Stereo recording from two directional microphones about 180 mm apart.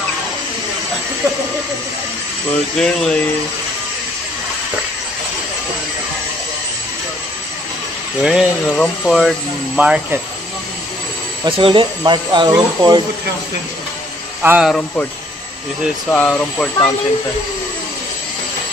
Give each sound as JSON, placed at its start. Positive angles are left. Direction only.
{"t": 2.8, "sound": "speech", "side_deg": 5}
{"t": 8.2, "sound": "speech", "side_deg": -5}
{"t": 8.6, "sound": "speech", "side_deg": 5}
{"t": 11.4, "sound": "speech", "side_deg": -30}
{"t": 14.4, "sound": "speech", "side_deg": -5}
{"t": 16.1, "sound": "speech", "side_deg": 10}